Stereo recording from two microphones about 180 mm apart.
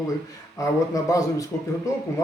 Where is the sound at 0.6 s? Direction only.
20° left (ahead or behind).